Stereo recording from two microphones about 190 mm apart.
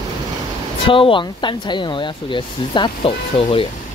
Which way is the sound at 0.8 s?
25° left (ahead or behind).